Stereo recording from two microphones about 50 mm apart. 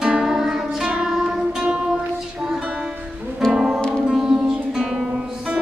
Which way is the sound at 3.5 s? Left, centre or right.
Centre.